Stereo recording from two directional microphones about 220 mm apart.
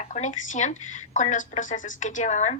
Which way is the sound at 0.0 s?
35° left (ahead or behind).